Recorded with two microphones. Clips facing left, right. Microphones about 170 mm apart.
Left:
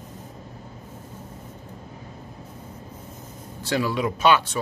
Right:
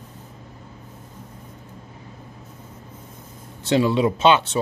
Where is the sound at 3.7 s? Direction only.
25° right (ahead or behind).